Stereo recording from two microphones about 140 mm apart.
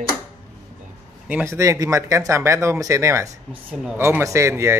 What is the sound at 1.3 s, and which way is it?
A man's voice, 20° right (ahead or behind).